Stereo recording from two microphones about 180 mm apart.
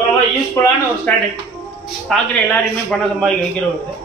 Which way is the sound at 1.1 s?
10° left (ahead or behind).